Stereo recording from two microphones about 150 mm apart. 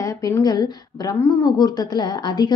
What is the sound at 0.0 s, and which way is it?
A woman's voice, 20° left (ahead or behind).